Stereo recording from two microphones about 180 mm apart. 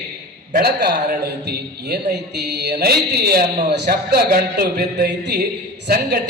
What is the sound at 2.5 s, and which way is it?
A man's voice, 65° right (ahead or behind).